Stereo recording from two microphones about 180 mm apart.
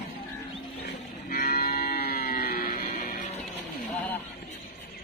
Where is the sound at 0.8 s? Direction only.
55° left (ahead or behind).